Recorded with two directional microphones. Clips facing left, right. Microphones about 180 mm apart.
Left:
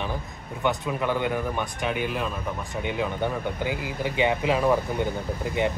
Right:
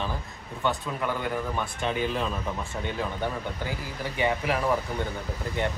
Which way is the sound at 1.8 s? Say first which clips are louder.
Even; 5° left (ahead or behind).